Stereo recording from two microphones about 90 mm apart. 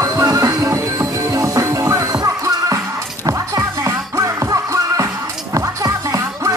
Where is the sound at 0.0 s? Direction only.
40° right (ahead or behind).